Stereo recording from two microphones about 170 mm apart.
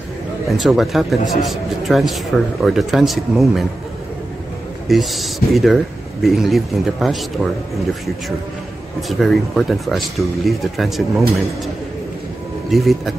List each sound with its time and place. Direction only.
0.5 s a man's voice: centre (ahead or behind)
4.8 s a man's voice: centre (ahead or behind)
9.2 s a man's voice: centre (ahead or behind)
12.7 s a man's voice: centre (ahead or behind)